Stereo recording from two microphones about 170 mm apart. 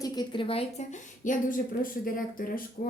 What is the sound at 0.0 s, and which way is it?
Speech, 25° left (ahead or behind).